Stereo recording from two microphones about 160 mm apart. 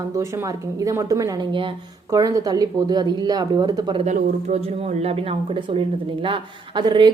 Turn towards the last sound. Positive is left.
turn(degrees=-30)  # may be behind; listen again after turning